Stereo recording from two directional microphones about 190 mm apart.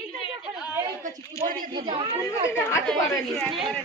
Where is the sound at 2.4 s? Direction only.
15° left (ahead or behind).